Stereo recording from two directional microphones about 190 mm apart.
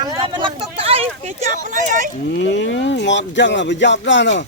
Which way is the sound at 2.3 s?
70° left (ahead or behind).